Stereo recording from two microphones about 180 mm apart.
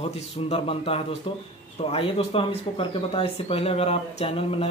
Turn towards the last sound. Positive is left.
turn(degrees=30)  # may be behind; listen again after turning